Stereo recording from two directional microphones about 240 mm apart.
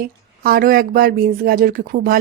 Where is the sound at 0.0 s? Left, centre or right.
Right.